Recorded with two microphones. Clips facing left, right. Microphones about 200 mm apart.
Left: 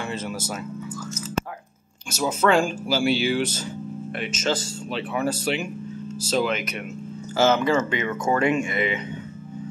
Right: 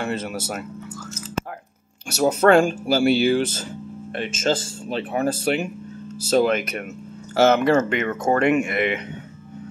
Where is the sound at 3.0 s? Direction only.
55° right (ahead or behind).